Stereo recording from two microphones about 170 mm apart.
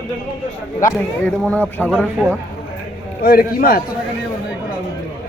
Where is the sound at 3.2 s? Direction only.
60° left (ahead or behind).